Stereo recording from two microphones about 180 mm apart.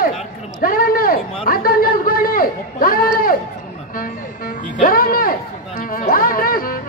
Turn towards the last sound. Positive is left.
turn(degrees=50)  # may be behind; listen again after turning